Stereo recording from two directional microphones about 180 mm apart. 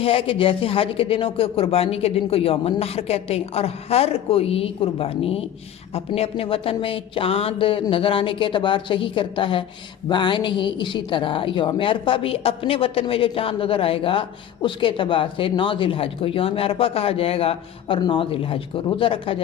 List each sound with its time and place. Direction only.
0.0 s a woman's voice: 30° left (ahead or behind)